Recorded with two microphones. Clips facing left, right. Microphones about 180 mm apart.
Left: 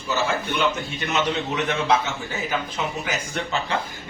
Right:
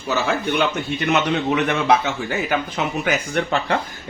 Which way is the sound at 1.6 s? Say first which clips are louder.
Right 4 dB; 60° right (ahead or behind).